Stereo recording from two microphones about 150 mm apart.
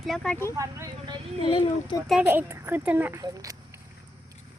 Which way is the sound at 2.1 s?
10° right (ahead or behind).